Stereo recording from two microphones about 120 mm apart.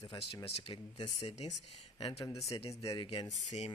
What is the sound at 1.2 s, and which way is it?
Speech, 60° left (ahead or behind).